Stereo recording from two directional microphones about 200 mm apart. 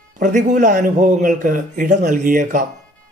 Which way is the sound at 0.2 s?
40° right (ahead or behind).